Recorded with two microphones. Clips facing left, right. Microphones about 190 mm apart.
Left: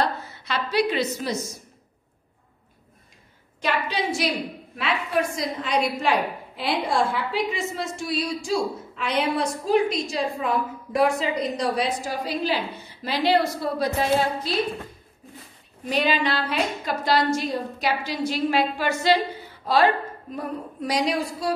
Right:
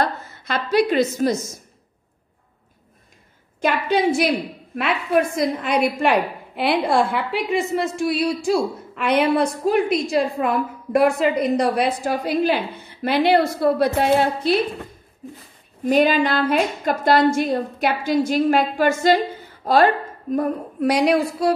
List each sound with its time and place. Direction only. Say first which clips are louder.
0.0 s a woman's voice: right 2 dB; 50° right (ahead or behind)
3.6 s a woman's voice: right 7 dB; 55° right (ahead or behind)
15.8 s a woman's voice: right 7 dB; 50° right (ahead or behind)